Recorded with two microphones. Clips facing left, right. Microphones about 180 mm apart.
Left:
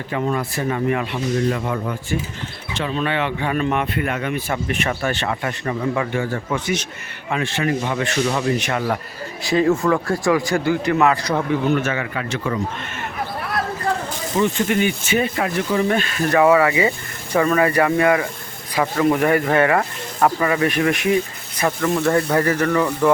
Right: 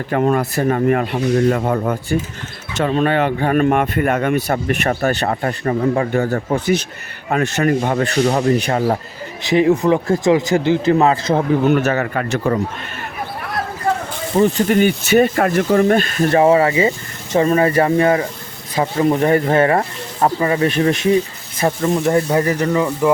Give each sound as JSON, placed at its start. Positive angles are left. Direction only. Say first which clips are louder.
{"t": 0.1, "sound": "speech", "louder": "right 6 dB", "side_deg": -55}
{"t": 8.0, "sound": "speech", "louder": "right 4 dB", "side_deg": -35}
{"t": 9.4, "sound": "speech", "louder": "right 3 dB", "side_deg": -20}
{"t": 11.8, "sound": "speech", "louder": "right 5 dB", "side_deg": -40}
{"t": 14.3, "sound": "speech", "louder": "right 5 dB", "side_deg": -35}
{"t": 16.3, "sound": "speech", "louder": "right 2 dB", "side_deg": -30}